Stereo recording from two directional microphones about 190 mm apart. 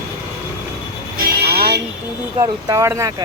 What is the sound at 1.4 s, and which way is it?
Music, 55° right (ahead or behind).